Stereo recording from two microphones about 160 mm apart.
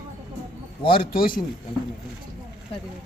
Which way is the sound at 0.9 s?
65° left (ahead or behind).